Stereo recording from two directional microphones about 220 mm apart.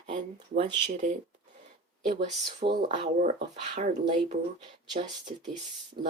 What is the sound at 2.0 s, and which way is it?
Speech, 35° right (ahead or behind).